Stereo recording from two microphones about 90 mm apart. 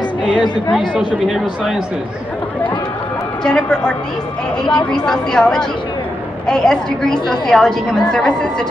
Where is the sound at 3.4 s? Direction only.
10° left (ahead or behind).